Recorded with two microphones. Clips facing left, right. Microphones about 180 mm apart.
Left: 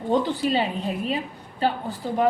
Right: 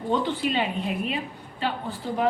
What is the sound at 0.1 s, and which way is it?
Speech, 40° left (ahead or behind).